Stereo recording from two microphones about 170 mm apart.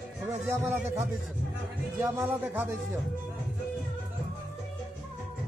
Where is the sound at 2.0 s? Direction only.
10° right (ahead or behind).